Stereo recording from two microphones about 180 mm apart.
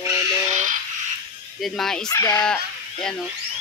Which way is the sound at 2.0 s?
20° left (ahead or behind).